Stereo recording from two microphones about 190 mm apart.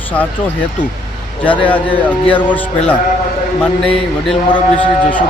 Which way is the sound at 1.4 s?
25° left (ahead or behind).